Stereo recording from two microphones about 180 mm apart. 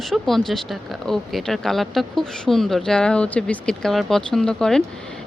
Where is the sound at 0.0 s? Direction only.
Centre (ahead or behind).